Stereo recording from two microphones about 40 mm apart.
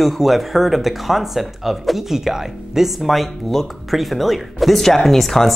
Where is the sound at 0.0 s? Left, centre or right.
Centre.